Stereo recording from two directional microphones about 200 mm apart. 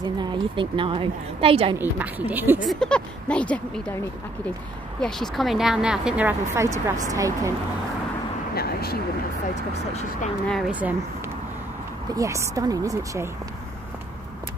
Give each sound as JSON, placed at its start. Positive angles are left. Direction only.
{"t": 0.0, "sound": "a woman's voice", "side_deg": -20}
{"t": 1.8, "sound": "a woman's voice", "side_deg": -10}
{"t": 2.7, "sound": "speech", "side_deg": 5}
{"t": 5.0, "sound": "speech", "side_deg": 0}
{"t": 8.5, "sound": "a sound", "side_deg": 50}
{"t": 10.7, "sound": "a woman's voice", "side_deg": -10}
{"t": 12.2, "sound": "a woman's voice", "side_deg": -15}